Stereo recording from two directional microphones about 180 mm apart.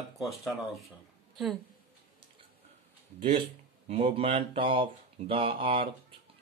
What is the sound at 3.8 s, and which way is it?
Speech, 35° right (ahead or behind).